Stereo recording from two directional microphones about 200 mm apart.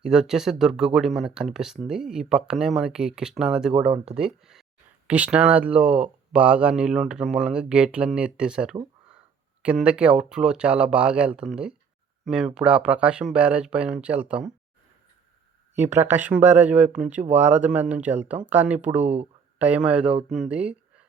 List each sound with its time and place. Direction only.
0.0 s speech: 5° right (ahead or behind)
3.9 s speech: 30° right (ahead or behind)
4.3 s speech: centre (ahead or behind)
15.9 s speech: 10° right (ahead or behind)
19.0 s speech: 35° right (ahead or behind)
19.5 s speech: 5° right (ahead or behind)